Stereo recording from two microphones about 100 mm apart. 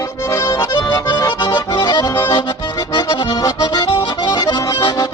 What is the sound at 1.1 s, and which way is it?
Accordion, 45° left (ahead or behind).